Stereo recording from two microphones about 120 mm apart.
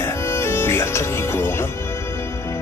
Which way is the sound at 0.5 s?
20° left (ahead or behind).